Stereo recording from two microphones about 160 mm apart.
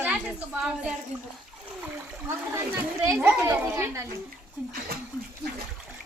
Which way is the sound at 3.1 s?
15° right (ahead or behind).